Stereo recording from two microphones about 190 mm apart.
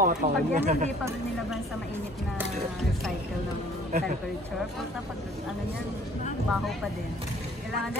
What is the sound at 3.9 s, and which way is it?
Speech, 40° right (ahead or behind).